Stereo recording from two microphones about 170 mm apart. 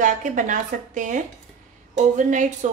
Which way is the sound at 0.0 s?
45° right (ahead or behind).